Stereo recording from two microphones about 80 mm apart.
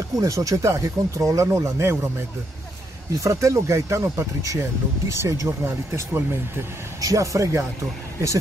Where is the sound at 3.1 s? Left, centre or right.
Right.